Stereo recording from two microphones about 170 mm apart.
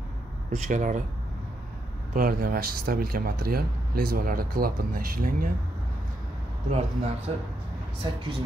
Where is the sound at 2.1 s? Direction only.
55° right (ahead or behind).